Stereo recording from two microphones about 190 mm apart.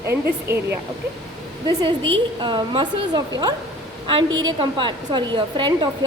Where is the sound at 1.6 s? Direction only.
25° right (ahead or behind).